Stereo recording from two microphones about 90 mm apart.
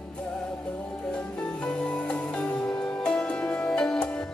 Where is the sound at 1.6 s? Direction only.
15° left (ahead or behind).